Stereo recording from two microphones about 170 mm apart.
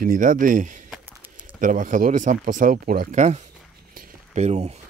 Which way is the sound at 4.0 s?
55° right (ahead or behind).